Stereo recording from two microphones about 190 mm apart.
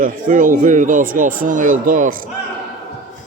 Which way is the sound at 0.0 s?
45° right (ahead or behind).